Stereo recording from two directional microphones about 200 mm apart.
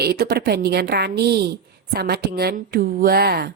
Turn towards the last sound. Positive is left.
turn(degrees=-50)  # may be behind; listen again after turning